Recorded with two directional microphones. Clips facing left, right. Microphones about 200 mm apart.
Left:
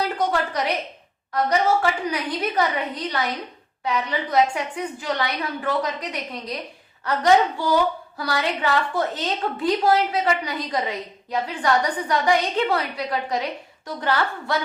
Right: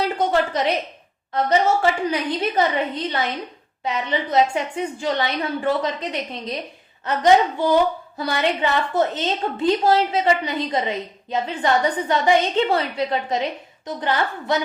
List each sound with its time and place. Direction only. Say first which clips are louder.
0.3 s a woman's voice: right 4 dB; 25° right (ahead or behind)